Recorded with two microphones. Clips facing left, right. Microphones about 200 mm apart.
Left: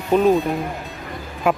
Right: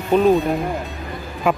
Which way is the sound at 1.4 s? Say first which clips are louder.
Even; 5° left (ahead or behind).